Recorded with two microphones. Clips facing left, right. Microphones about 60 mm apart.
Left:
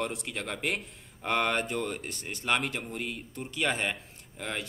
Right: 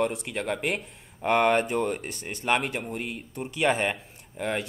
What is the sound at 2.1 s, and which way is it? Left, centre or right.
Speech, centre.